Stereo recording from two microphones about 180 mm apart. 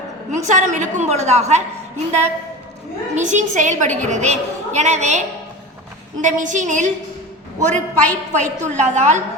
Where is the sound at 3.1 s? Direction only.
40° right (ahead or behind).